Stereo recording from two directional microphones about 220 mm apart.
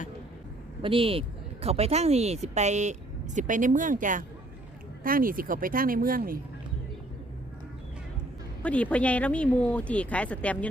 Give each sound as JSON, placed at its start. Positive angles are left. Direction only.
{"t": 0.8, "sound": "speech", "side_deg": -25}
{"t": 8.6, "sound": "speech", "side_deg": 5}